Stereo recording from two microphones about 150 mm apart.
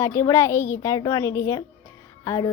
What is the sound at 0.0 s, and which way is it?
Speech, 20° left (ahead or behind).